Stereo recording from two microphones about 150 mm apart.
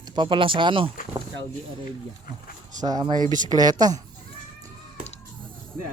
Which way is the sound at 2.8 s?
25° right (ahead or behind).